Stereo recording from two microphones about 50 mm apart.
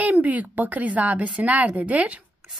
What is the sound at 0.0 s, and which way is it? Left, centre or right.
A woman's voice, right.